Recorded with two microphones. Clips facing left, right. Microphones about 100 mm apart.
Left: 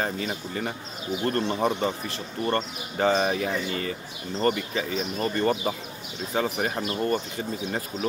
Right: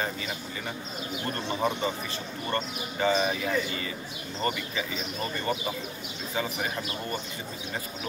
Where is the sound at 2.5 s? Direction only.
50° left (ahead or behind).